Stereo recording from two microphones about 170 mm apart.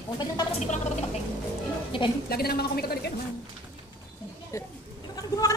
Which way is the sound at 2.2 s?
65° left (ahead or behind).